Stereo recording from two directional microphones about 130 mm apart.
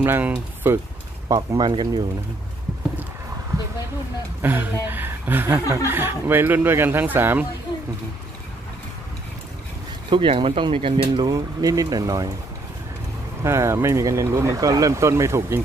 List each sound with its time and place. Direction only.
0.0 s speech: 15° right (ahead or behind)
1.3 s speech: 30° right (ahead or behind)
4.4 s speech: 15° right (ahead or behind)
10.0 s speech: 40° right (ahead or behind)
11.2 s speech: 25° right (ahead or behind)
13.4 s speech: 20° right (ahead or behind)